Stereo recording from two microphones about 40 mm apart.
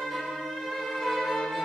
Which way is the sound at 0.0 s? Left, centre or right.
Centre.